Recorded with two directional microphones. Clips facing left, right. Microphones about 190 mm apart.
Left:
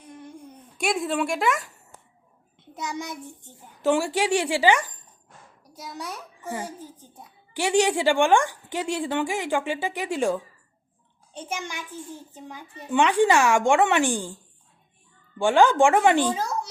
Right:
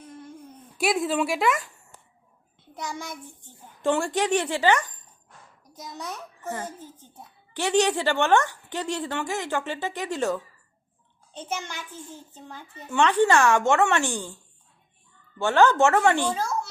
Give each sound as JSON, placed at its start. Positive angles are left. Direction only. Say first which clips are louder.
{"t": 0.8, "sound": "speech", "louder": "right 1 dB", "side_deg": 0}
{"t": 2.6, "sound": "a child's voice", "louder": "left 2 dB", "side_deg": 20}
{"t": 3.8, "sound": "speech", "louder": "left 2 dB", "side_deg": 5}
{"t": 15.4, "sound": "speech", "louder": "left 1 dB", "side_deg": 10}